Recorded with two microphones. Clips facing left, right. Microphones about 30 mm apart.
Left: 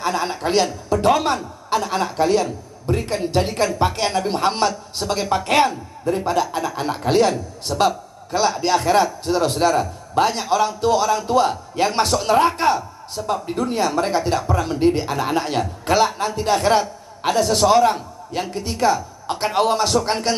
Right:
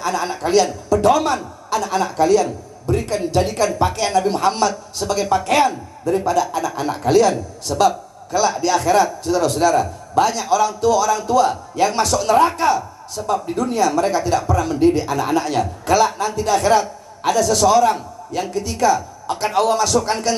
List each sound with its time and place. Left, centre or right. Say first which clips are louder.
0.0 s a man's voice: right 1 dB; left
5.0 s a man's voice: right 2 dB; centre
5.3 s a man's voice: right 1 dB; left
7.7 s a man's voice: right 2 dB; centre
8.3 s a man's voice: right 1 dB; left